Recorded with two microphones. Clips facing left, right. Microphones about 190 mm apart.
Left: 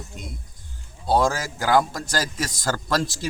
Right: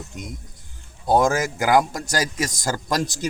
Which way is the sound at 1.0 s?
20° right (ahead or behind).